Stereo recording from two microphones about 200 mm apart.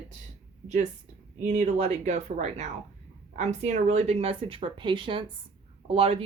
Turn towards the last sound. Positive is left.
turn(degrees=-30)  # may be behind; listen again after turning